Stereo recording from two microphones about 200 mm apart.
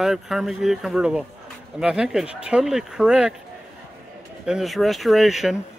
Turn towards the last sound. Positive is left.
turn(degrees=0)  # may be behind; listen again after turning